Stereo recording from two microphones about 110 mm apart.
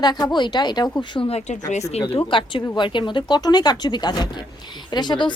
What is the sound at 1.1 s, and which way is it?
Speech, 60° left (ahead or behind).